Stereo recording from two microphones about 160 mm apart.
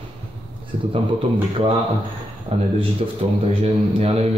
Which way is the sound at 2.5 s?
35° right (ahead or behind).